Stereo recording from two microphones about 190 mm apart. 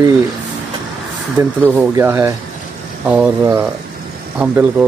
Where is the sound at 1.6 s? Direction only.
10° right (ahead or behind).